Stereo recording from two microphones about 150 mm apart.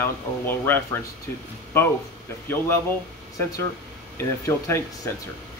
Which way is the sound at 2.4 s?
15° left (ahead or behind).